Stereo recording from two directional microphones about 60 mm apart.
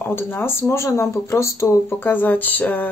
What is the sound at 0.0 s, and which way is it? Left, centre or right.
Speech, left.